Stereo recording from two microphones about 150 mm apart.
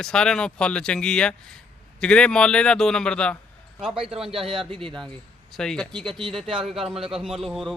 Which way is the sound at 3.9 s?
40° right (ahead or behind).